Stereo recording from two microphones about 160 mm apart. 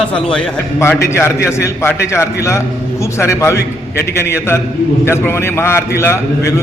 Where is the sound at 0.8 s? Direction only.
15° left (ahead or behind).